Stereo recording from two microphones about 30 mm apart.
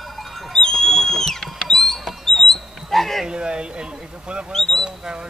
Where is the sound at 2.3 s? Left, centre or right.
Centre.